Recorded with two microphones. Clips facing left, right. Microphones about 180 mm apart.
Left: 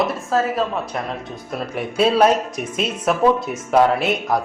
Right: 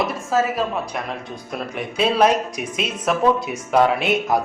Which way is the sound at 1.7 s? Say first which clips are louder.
Left 2 dB; 5° left (ahead or behind).